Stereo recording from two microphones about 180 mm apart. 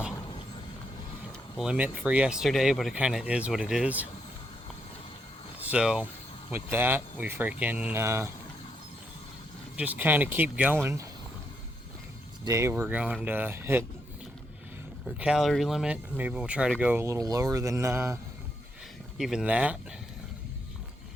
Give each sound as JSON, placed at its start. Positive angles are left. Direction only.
{"t": 1.5, "sound": "speech", "side_deg": -5}
{"t": 5.6, "sound": "speech", "side_deg": -5}
{"t": 9.7, "sound": "speech", "side_deg": -10}
{"t": 12.5, "sound": "speech", "side_deg": -15}
{"t": 15.0, "sound": "speech", "side_deg": -5}
{"t": 19.1, "sound": "speech", "side_deg": 0}